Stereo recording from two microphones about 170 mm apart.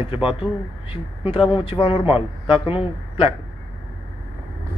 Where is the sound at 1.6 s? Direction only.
30° left (ahead or behind).